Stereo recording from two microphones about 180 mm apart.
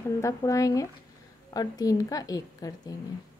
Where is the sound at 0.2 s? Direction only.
20° left (ahead or behind).